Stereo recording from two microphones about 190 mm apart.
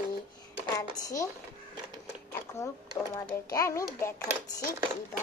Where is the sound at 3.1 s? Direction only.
15° left (ahead or behind).